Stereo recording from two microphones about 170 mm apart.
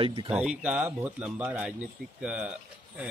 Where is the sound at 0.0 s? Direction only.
30° right (ahead or behind).